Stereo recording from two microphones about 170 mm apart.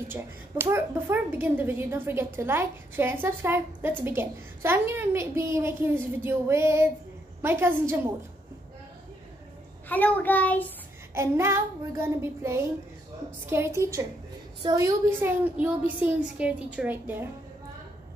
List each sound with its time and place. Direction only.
0.1 s a woman's voice: 15° right (ahead or behind)
9.8 s child singing: 10° left (ahead or behind)
11.1 s a woman's voice: 15° right (ahead or behind)